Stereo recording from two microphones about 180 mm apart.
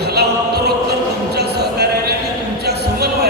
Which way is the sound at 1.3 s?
65° right (ahead or behind).